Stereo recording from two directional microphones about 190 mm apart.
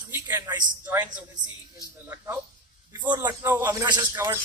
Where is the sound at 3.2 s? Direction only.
15° right (ahead or behind).